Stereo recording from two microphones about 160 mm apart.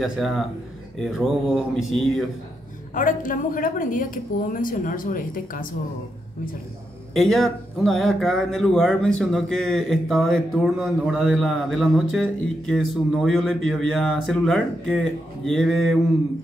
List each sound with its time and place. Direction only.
0.0 s speech: centre (ahead or behind)
2.9 s speech: 55° left (ahead or behind)
7.2 s speech: centre (ahead or behind)